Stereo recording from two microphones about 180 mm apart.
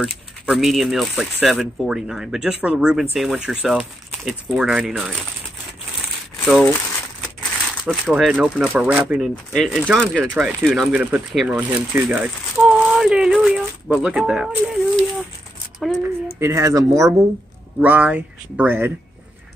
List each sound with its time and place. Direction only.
0.0 s speech: centre (ahead or behind)
7.8 s speech: 5° right (ahead or behind)
15.8 s a sound: 5° left (ahead or behind)
16.3 s speech: 15° right (ahead or behind)